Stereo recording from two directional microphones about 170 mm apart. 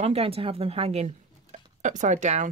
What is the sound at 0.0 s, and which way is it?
A woman's voice, 35° right (ahead or behind).